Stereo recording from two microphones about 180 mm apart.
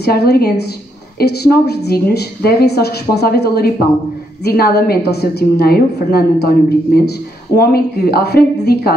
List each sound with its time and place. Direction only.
0.0 s a woman's voice: 60° left (ahead or behind)
7.5 s a woman's voice: 60° left (ahead or behind)